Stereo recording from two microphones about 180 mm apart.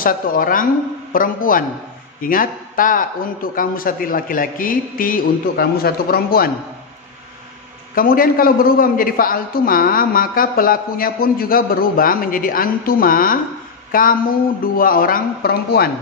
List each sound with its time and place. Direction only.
0.0 s a man's voice: 50° left (ahead or behind)
7.9 s a man's voice: 55° left (ahead or behind)